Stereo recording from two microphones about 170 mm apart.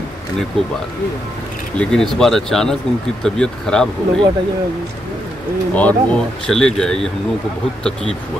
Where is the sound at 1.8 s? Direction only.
5° left (ahead or behind).